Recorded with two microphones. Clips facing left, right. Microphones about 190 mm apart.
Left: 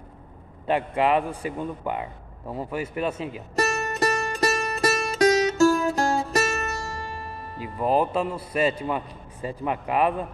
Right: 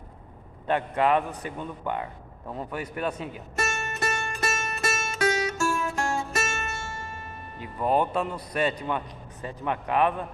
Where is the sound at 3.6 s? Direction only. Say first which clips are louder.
Left 6 dB; 35° left (ahead or behind).